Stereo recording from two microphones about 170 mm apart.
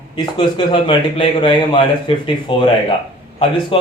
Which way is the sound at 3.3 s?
30° left (ahead or behind).